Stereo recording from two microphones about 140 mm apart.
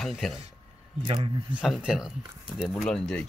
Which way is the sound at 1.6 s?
5° right (ahead or behind).